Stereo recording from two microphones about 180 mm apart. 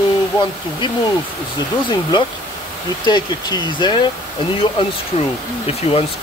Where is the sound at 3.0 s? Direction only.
25° left (ahead or behind).